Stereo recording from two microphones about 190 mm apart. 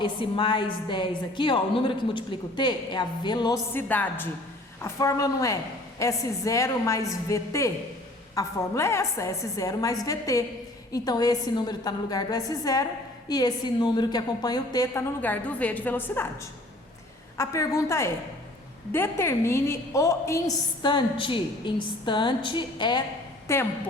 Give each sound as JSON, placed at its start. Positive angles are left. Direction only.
{"t": 0.0, "sound": "a woman's voice", "side_deg": 25}
{"t": 3.7, "sound": "a woman's voice", "side_deg": 10}